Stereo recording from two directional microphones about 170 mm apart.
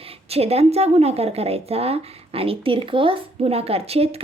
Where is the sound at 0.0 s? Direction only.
35° right (ahead or behind).